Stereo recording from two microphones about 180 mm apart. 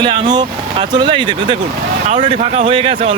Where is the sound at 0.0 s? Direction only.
25° right (ahead or behind).